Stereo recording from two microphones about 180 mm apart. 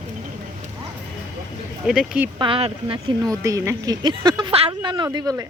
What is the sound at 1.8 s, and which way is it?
Speech, 5° right (ahead or behind).